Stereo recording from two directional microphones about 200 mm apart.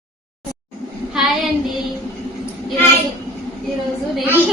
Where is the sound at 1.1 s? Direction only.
Centre (ahead or behind).